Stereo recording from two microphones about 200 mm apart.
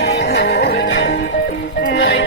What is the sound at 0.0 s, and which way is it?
Music, 55° left (ahead or behind).